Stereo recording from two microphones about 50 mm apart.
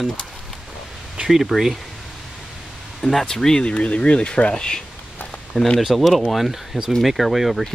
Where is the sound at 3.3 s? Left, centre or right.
Centre.